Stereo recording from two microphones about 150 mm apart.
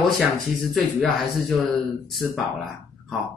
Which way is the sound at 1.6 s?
Centre (ahead or behind).